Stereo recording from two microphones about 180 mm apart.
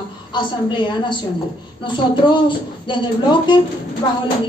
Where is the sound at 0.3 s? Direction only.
25° left (ahead or behind).